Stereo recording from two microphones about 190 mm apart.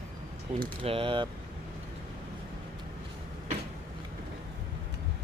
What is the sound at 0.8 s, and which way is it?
Speech, 30° right (ahead or behind).